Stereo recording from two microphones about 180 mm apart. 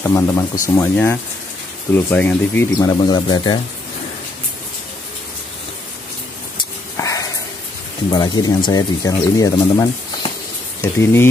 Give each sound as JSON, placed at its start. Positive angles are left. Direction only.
{"t": 0.0, "sound": "speech", "side_deg": 15}
{"t": 2.8, "sound": "speech", "side_deg": 25}
{"t": 6.6, "sound": "a sound", "side_deg": 20}
{"t": 8.1, "sound": "speech", "side_deg": 20}